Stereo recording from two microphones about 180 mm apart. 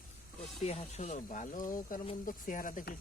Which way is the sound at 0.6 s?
35° left (ahead or behind).